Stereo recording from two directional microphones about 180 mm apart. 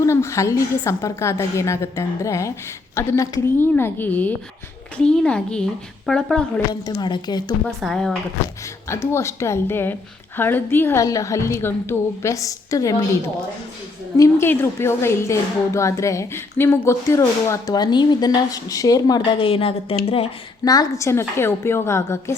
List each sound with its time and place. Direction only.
0.0 s a woman's voice: 15° left (ahead or behind)
6.7 s a woman's voice: 25° left (ahead or behind)
7.8 s a woman's voice: centre (ahead or behind)
8.9 s a woman's voice: 15° left (ahead or behind)
14.2 s a woman's voice: 15° left (ahead or behind); by 20.3 s 35° left (ahead or behind)
20.7 s a woman's voice: 20° left (ahead or behind)